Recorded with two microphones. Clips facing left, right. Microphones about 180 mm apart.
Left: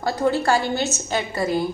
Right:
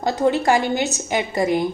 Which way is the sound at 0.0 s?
20° right (ahead or behind).